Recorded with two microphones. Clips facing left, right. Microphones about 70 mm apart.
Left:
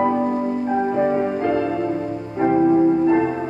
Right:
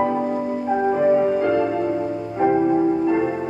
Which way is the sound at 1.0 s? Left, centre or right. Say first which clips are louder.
Right 3 dB; centre.